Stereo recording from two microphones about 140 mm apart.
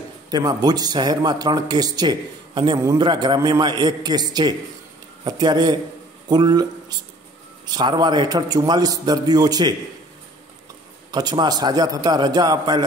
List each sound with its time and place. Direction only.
0.3 s a man's voice: 25° right (ahead or behind)
2.8 s a man's voice: 20° right (ahead or behind)
3.1 s a man's voice: 30° right (ahead or behind)
11.1 s a man's voice: 30° right (ahead or behind)